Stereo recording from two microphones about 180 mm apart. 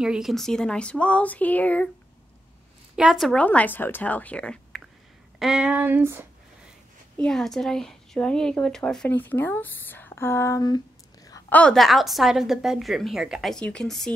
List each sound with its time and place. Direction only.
0.0 s a woman's voice: 5° right (ahead or behind)
3.0 s a woman's voice: centre (ahead or behind)
7.2 s speech: 5° left (ahead or behind); by 10.8 s 20° left (ahead or behind)
11.2 s a sound: 20° left (ahead or behind)
11.5 s speech: 5° left (ahead or behind)